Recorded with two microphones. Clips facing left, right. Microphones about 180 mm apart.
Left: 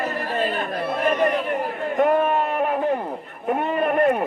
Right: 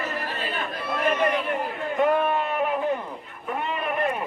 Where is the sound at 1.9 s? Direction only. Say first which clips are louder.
Left 3 dB; 50° left (ahead or behind).